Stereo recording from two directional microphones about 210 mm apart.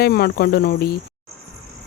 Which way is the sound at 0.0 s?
45° left (ahead or behind).